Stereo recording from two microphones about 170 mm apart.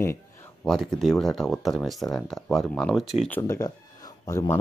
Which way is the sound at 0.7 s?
Centre (ahead or behind).